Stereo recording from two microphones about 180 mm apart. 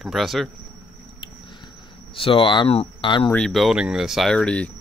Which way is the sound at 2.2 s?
30° left (ahead or behind).